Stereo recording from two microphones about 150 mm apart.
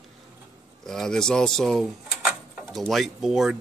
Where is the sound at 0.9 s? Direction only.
5° left (ahead or behind).